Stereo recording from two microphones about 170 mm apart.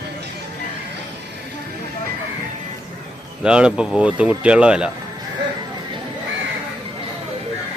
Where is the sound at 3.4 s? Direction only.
5° right (ahead or behind).